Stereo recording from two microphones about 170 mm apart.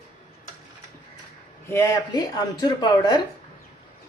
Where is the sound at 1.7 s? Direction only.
20° left (ahead or behind).